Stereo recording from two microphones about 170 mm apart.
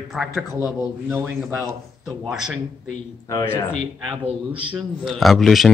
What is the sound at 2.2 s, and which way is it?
Speech, 5° right (ahead or behind).